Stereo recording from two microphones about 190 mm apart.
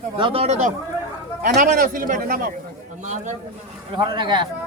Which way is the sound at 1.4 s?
50° right (ahead or behind).